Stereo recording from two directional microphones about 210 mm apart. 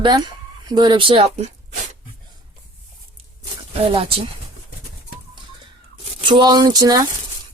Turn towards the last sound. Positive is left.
turn(degrees=-20)  # may be behind; listen again after turning